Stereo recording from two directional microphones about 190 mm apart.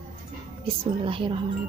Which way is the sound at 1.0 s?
25° right (ahead or behind).